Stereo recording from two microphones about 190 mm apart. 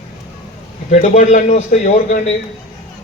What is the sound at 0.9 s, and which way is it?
A man's voice, 40° left (ahead or behind).